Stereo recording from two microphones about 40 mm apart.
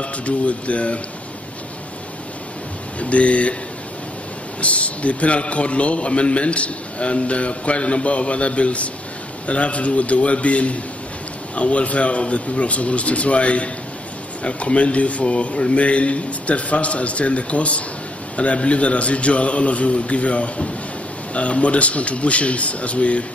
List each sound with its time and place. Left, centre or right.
0.0 s a man's voice: left
3.0 s a man's voice: left
4.6 s a man's voice: left